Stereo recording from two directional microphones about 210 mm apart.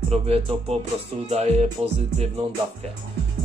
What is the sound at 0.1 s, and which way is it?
Music, 30° right (ahead or behind).